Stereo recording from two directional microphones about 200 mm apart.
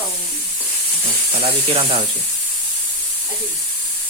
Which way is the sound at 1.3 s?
35° right (ahead or behind).